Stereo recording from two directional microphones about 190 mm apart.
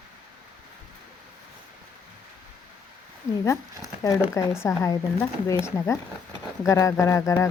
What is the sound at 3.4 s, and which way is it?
Speech, 15° left (ahead or behind).